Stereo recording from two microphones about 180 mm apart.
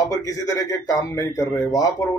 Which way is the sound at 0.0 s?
20° left (ahead or behind).